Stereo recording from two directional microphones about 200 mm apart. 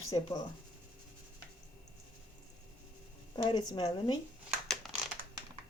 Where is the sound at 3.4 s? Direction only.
20° left (ahead or behind).